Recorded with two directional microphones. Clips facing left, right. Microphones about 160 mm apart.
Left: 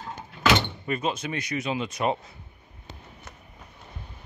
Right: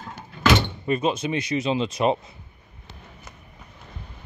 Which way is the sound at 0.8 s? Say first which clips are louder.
Right 5 dB; 25° right (ahead or behind).